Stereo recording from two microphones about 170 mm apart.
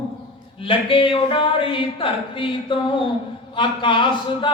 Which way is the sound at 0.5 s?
30° left (ahead or behind).